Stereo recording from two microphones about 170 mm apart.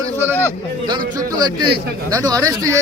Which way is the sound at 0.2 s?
10° right (ahead or behind).